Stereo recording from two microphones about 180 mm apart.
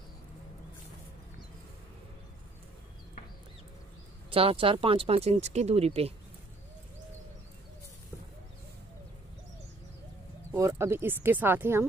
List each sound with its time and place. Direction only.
4.3 s speech: 30° right (ahead or behind)
10.5 s speech: 15° right (ahead or behind)